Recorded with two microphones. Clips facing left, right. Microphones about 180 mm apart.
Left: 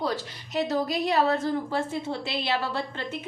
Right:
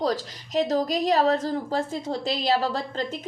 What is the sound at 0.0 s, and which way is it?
A woman's voice, 40° right (ahead or behind).